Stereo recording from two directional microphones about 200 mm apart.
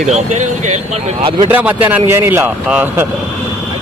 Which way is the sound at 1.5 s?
10° right (ahead or behind).